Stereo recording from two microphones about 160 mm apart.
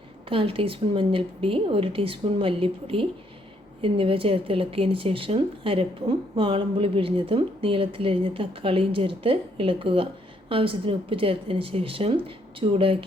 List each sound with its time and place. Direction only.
0.3 s speech: 35° right (ahead or behind)